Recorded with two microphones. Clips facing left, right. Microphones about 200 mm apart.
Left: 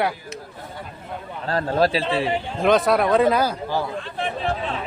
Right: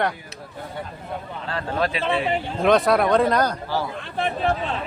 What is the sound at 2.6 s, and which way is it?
Speech, centre (ahead or behind).